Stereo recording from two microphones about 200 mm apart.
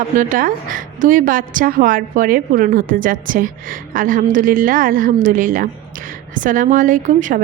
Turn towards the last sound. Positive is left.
turn(degrees=-40)  # may be behind; listen again after turning